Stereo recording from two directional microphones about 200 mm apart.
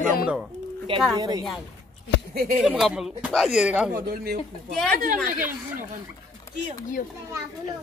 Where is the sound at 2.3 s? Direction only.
50° right (ahead or behind).